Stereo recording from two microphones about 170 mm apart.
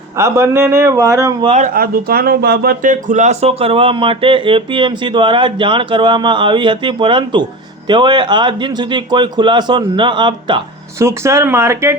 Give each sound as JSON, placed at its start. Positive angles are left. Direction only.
{"t": 0.2, "sound": "speech", "side_deg": -15}
{"t": 1.5, "sound": "speech", "side_deg": -45}
{"t": 10.9, "sound": "speech", "side_deg": -15}